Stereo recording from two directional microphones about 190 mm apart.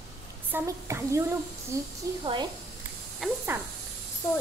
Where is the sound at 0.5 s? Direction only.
15° right (ahead or behind).